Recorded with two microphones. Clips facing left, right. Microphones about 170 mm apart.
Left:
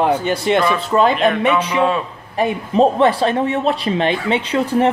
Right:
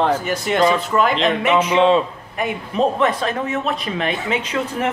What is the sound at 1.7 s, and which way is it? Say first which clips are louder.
Speech: right 3 dB; 25° right (ahead or behind).